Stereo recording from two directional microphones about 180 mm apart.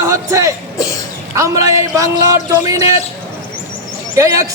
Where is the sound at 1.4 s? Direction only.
15° right (ahead or behind).